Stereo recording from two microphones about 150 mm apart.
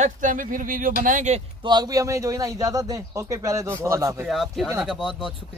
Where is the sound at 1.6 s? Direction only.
25° right (ahead or behind).